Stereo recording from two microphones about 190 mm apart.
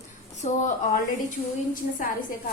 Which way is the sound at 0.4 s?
40° left (ahead or behind).